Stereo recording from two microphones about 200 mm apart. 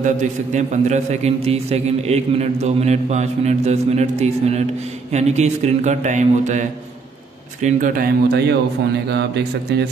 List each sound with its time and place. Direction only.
0.0 s a man's voice: 35° right (ahead or behind); by 9.8 s 60° right (ahead or behind)